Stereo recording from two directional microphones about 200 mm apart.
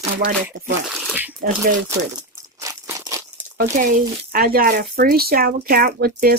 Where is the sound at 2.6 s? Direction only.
15° right (ahead or behind).